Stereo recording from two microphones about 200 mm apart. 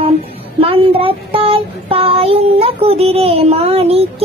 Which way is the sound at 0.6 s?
30° right (ahead or behind).